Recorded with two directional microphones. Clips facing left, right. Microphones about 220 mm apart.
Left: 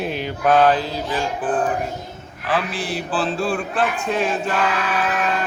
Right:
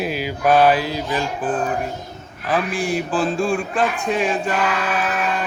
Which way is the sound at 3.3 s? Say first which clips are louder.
Right 2 dB; 10° right (ahead or behind).